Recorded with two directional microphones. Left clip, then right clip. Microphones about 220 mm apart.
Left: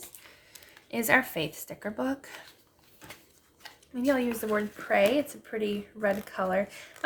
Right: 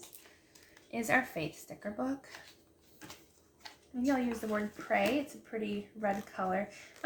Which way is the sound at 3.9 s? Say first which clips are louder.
Left 6 dB; 45° left (ahead or behind).